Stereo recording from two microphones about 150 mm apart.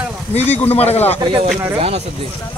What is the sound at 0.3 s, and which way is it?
Speech, 45° left (ahead or behind).